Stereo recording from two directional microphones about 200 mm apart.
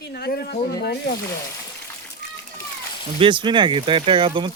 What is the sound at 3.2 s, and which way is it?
Speech, 25° right (ahead or behind).